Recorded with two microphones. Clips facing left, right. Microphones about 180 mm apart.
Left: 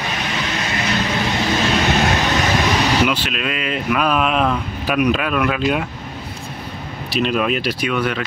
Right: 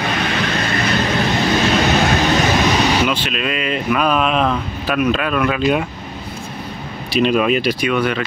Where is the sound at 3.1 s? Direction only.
5° left (ahead or behind).